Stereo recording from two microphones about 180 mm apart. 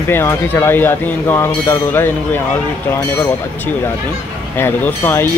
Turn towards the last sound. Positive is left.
turn(degrees=15)  # may be behind; listen again after turning